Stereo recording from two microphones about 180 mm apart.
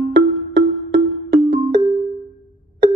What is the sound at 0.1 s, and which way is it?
Music, 70° right (ahead or behind).